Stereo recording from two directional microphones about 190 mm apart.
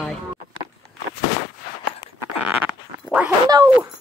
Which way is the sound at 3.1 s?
5° right (ahead or behind).